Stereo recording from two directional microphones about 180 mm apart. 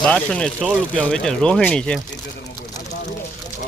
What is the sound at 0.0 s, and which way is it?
Speech, 5° left (ahead or behind).